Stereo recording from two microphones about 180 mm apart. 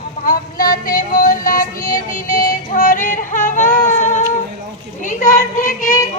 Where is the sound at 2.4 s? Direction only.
50° left (ahead or behind).